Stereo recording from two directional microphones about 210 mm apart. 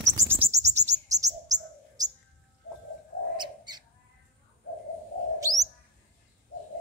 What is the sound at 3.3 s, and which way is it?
Bird, 20° right (ahead or behind).